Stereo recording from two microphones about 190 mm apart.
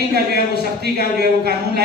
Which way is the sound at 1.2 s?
55° right (ahead or behind).